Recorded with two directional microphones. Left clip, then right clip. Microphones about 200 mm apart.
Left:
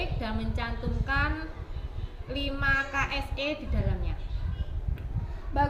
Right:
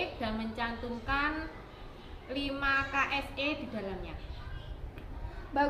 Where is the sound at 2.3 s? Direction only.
20° left (ahead or behind).